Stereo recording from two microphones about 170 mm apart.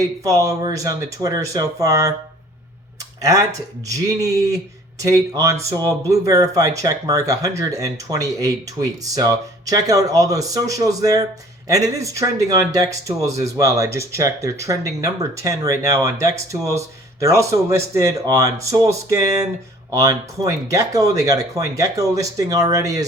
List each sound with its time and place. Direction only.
0.3 s speech: 20° right (ahead or behind)
3.2 s speech: 20° right (ahead or behind)